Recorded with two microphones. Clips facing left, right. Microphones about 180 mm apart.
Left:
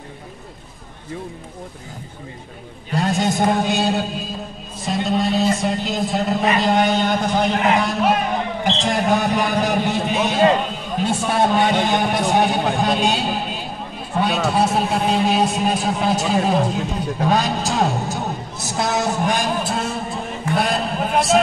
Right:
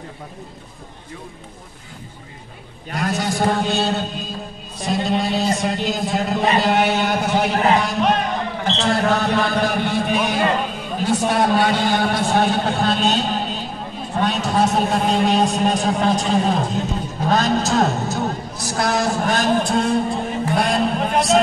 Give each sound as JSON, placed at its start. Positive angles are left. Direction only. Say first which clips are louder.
{"t": 2.9, "sound": "a man's voice", "louder": "left 3 dB", "side_deg": 25}
{"t": 7.8, "sound": "a man's voice", "louder": "even", "side_deg": 5}
{"t": 8.8, "sound": "a man's voice", "louder": "right 1 dB", "side_deg": 15}